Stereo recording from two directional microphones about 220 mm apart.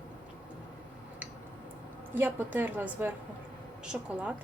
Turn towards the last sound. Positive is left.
turn(degrees=-5)  # may be behind; listen again after turning